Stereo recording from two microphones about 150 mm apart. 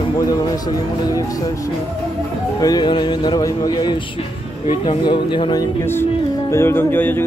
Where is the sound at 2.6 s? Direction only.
25° left (ahead or behind).